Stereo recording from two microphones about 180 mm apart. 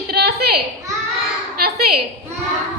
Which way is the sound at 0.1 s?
60° right (ahead or behind).